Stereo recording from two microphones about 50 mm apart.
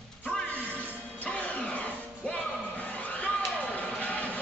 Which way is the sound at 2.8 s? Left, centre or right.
Left.